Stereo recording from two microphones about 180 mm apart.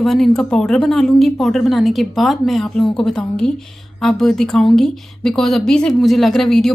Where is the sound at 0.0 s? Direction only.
Centre (ahead or behind).